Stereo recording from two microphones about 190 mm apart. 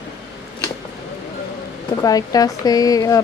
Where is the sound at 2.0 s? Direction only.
20° left (ahead or behind).